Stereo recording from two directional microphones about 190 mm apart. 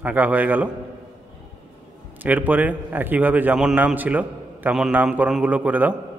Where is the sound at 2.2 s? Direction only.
10° right (ahead or behind).